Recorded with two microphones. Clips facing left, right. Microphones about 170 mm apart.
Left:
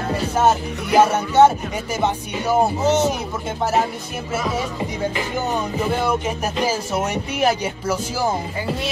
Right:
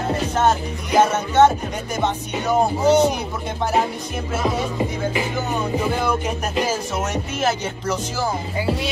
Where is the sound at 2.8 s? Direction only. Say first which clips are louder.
Right 3 dB; 10° right (ahead or behind).